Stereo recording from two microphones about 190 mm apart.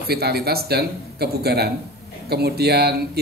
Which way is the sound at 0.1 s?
55° right (ahead or behind).